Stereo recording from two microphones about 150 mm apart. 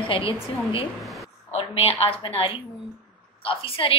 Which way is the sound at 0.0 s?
35° left (ahead or behind).